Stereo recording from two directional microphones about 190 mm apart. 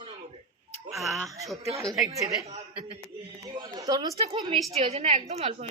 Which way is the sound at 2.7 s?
5° right (ahead or behind).